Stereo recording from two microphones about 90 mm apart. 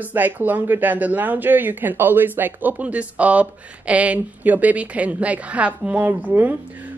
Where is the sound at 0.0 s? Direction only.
20° right (ahead or behind).